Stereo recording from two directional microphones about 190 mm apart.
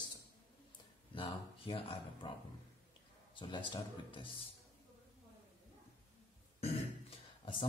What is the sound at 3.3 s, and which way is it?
Speech, 25° left (ahead or behind).